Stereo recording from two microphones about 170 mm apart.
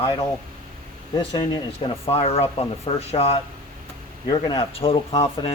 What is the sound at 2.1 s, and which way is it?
Speech, 35° left (ahead or behind).